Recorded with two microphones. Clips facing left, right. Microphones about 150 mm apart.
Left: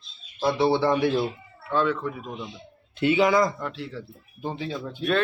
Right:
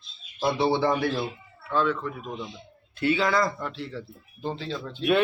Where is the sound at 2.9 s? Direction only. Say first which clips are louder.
Left 4 dB; 20° left (ahead or behind).